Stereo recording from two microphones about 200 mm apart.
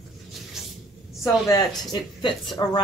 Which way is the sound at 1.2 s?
20° left (ahead or behind).